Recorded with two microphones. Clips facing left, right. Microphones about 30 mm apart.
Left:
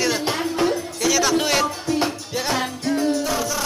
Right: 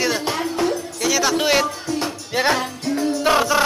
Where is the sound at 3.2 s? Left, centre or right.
Right.